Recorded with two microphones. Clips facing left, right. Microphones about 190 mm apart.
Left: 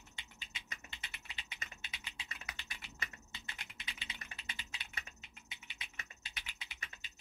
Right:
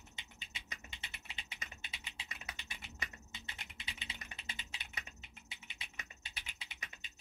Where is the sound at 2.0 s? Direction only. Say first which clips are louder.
Even; 20° right (ahead or behind).